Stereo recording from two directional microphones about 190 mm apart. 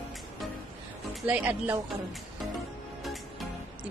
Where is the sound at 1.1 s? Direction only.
5° right (ahead or behind).